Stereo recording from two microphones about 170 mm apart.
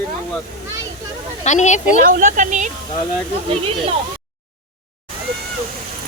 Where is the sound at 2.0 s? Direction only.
50° right (ahead or behind).